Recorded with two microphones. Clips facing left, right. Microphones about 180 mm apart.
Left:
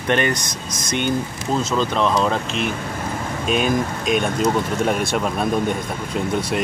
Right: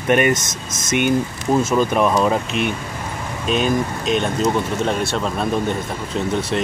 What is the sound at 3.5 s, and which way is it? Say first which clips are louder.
Speech: right 1 dB; 10° left (ahead or behind).